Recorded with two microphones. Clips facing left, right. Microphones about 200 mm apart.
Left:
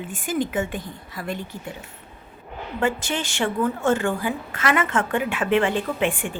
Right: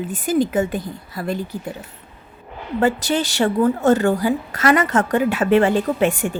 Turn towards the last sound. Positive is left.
turn(degrees=-40)  # may be behind; listen again after turning